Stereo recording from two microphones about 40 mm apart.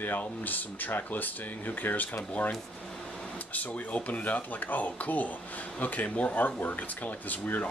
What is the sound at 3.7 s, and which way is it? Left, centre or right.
Speech, left.